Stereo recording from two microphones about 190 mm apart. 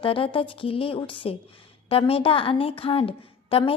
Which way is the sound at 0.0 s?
30° left (ahead or behind).